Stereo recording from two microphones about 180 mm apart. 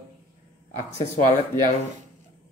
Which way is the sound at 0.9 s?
35° left (ahead or behind).